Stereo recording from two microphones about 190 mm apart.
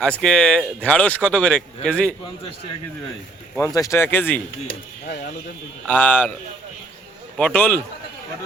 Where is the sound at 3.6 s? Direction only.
15° left (ahead or behind).